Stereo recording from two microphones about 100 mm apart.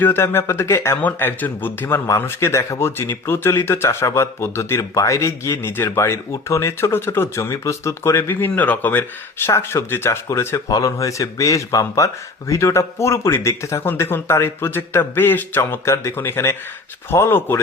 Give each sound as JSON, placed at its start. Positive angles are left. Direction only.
{"t": 0.0, "sound": "a man's voice", "side_deg": 25}
{"t": 10.7, "sound": "a man's voice", "side_deg": 35}